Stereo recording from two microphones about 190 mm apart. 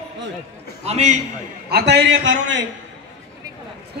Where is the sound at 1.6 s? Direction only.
60° right (ahead or behind).